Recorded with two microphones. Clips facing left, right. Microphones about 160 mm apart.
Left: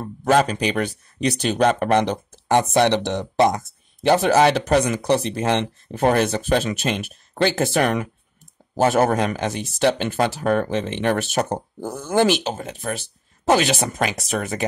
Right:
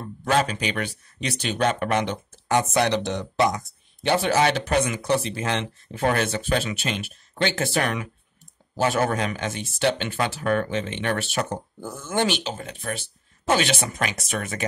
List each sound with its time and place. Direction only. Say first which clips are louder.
0.0 s speech: left 5 dB; 40° left (ahead or behind)
4.1 s speech: left 5 dB; 40° left (ahead or behind)